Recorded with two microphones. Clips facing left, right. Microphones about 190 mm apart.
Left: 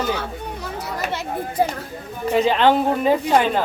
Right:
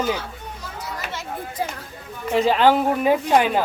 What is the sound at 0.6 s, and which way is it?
Children playing, 65° left (ahead or behind).